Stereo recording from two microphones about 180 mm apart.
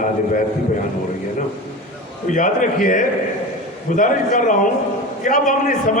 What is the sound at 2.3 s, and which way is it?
A man's voice, 45° left (ahead or behind).